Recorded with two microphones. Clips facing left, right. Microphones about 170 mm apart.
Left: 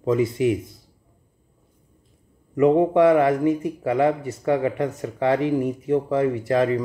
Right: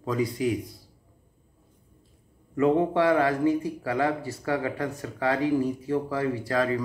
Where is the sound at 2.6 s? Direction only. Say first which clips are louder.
Left 6 dB; 20° left (ahead or behind).